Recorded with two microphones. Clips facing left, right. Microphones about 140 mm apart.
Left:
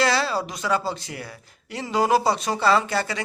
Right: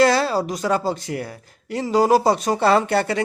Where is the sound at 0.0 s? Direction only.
45° right (ahead or behind).